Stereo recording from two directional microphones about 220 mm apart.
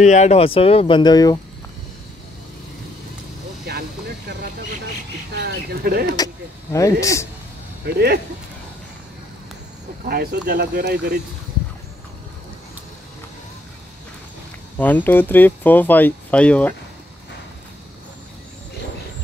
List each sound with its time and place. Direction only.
0.0 s speech: 30° left (ahead or behind)
3.7 s vehicle: 45° right (ahead or behind)
5.4 s bird: 45° right (ahead or behind)
6.1 s speech: 15° left (ahead or behind)
7.8 s speech: 45° right (ahead or behind)
10.0 s speech: 45° right (ahead or behind)
14.8 s speech: 5° left (ahead or behind)